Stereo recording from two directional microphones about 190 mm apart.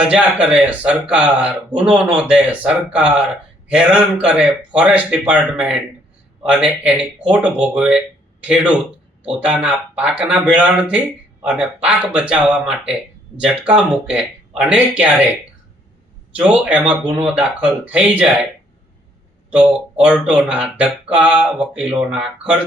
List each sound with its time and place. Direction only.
0.0 s speech: 5° right (ahead or behind)
16.4 s speech: 5° right (ahead or behind)
19.5 s speech: 5° right (ahead or behind)